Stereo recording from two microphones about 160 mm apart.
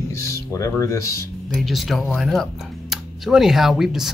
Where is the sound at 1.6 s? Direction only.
Centre (ahead or behind).